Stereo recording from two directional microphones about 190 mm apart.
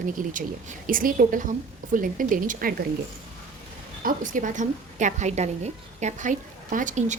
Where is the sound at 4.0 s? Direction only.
45° right (ahead or behind).